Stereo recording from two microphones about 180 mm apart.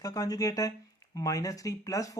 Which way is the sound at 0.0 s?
20° left (ahead or behind).